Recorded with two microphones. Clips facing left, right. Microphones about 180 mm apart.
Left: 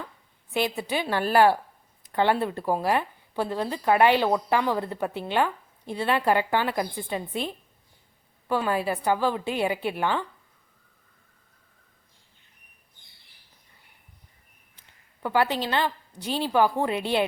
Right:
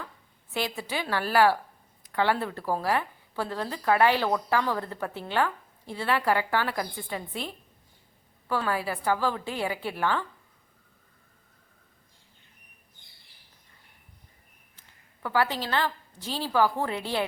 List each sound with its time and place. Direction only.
0.5 s speech: 20° left (ahead or behind)
15.2 s speech: 20° left (ahead or behind)